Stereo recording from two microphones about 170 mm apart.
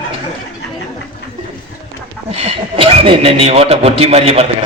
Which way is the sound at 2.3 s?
35° right (ahead or behind).